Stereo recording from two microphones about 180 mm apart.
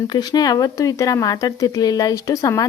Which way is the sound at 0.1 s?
20° left (ahead or behind).